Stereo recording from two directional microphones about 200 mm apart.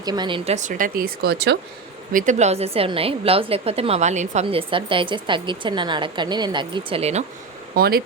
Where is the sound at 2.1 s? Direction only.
40° right (ahead or behind).